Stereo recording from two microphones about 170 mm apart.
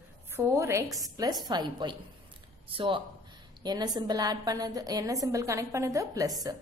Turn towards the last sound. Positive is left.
turn(degrees=-20)  # may be behind; listen again after turning